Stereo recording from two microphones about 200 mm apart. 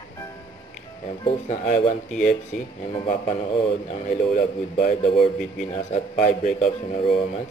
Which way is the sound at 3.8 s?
45° left (ahead or behind).